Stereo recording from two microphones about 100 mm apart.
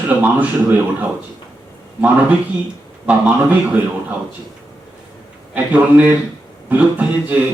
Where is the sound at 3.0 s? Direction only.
15° right (ahead or behind).